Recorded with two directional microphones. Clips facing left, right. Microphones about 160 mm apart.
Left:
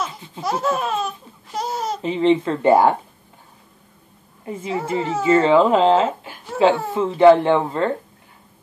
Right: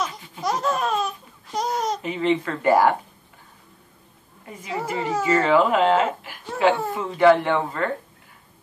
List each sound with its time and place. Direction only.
0.4 s laughter: centre (ahead or behind)
2.0 s speech: 30° left (ahead or behind)
4.5 s speech: 25° left (ahead or behind)